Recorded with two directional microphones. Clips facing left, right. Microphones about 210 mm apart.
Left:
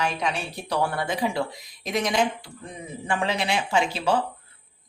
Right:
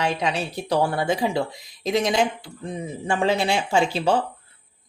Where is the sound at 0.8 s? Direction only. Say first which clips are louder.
Right 3 dB; 25° right (ahead or behind).